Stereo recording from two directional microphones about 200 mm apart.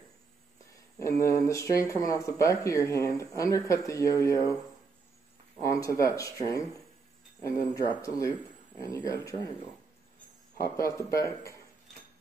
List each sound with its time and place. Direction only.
1.1 s speech: 15° left (ahead or behind)
5.6 s speech: 15° left (ahead or behind)
10.6 s speech: 15° left (ahead or behind)